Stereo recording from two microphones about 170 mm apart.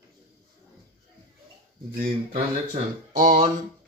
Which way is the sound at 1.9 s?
60° right (ahead or behind).